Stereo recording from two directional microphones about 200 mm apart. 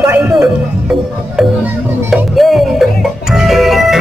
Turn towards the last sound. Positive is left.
turn(degrees=0)  # may be behind; listen again after turning